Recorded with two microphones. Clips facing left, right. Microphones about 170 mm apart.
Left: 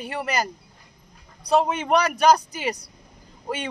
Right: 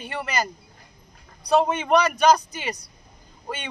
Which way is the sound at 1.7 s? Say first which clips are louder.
Right 1 dB; 10° left (ahead or behind).